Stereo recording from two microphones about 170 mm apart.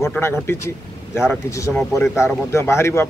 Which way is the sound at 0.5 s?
15° left (ahead or behind).